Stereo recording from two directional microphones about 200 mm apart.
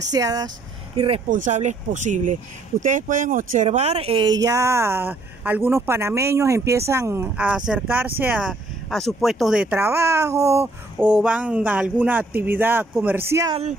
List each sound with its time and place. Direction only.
0.1 s speech: 20° right (ahead or behind)
0.9 s speech: 30° right (ahead or behind); by 13.6 s 15° right (ahead or behind)